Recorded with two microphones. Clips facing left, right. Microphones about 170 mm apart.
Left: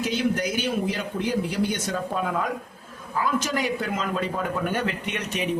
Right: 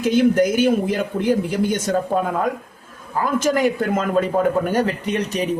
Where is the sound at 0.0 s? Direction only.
50° right (ahead or behind).